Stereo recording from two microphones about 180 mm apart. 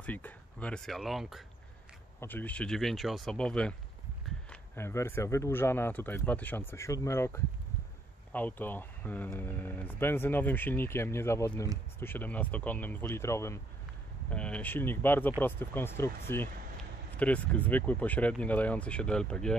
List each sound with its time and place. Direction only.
0.0 s speech: 10° left (ahead or behind)
2.1 s speech: 10° left (ahead or behind)